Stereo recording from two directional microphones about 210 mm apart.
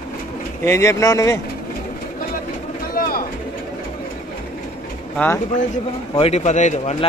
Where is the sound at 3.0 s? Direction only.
45° left (ahead or behind).